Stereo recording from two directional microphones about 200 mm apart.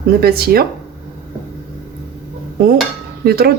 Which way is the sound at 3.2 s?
50° right (ahead or behind).